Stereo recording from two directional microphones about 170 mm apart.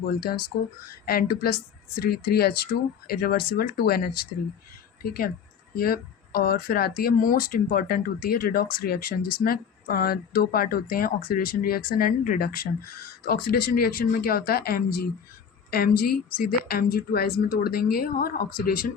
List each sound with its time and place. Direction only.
1.0 s speech: 65° left (ahead or behind)